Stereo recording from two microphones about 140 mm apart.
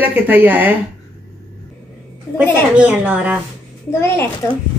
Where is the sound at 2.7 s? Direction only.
10° right (ahead or behind).